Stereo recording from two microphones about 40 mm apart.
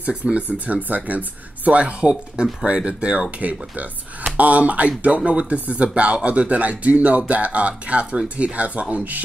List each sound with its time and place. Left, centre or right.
0.2 s speech: right